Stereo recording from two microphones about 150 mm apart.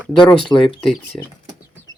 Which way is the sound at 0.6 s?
Centre (ahead or behind).